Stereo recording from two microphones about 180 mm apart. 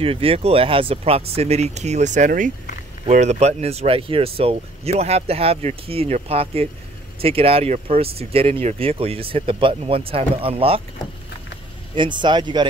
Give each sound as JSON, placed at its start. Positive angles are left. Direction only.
{"t": 0.0, "sound": "speech", "side_deg": -30}
{"t": 11.9, "sound": "speech", "side_deg": -25}